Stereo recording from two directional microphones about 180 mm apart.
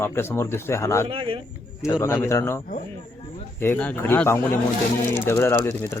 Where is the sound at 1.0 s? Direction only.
30° right (ahead or behind).